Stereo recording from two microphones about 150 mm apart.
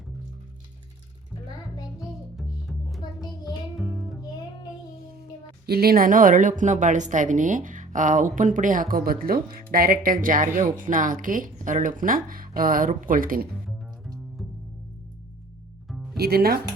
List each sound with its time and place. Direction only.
2.0 s music: centre (ahead or behind)
3.0 s child singing: 30° left (ahead or behind)
5.6 s speech: 90° right; by 13.5 s 70° right (ahead or behind)
16.1 s speech: 90° right